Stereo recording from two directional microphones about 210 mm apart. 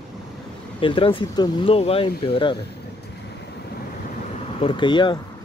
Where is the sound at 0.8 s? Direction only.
25° left (ahead or behind).